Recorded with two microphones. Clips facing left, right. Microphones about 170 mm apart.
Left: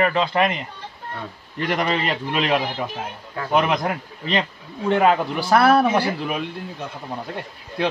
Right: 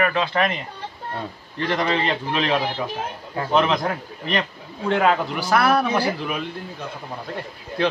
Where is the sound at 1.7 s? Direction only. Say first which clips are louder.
Even; 15° left (ahead or behind).